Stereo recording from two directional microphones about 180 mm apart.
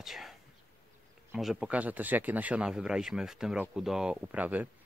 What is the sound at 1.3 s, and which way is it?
Speech, 5° right (ahead or behind).